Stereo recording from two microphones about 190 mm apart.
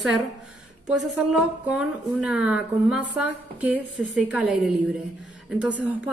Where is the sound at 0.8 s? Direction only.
5° right (ahead or behind).